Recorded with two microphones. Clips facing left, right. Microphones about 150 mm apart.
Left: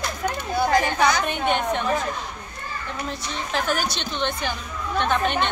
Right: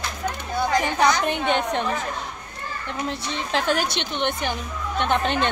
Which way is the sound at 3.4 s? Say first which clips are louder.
Right 2 dB; 25° right (ahead or behind).